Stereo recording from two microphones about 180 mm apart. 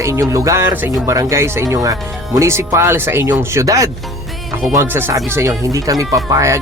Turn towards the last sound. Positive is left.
turn(degrees=-15)  # may be behind; listen again after turning